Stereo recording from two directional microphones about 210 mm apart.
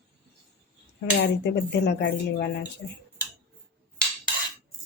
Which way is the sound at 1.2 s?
55° left (ahead or behind).